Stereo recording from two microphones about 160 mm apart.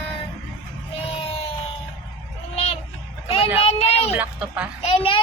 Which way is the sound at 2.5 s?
40° left (ahead or behind).